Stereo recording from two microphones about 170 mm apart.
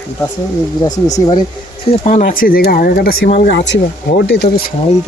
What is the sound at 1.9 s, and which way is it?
Speech, 45° left (ahead or behind).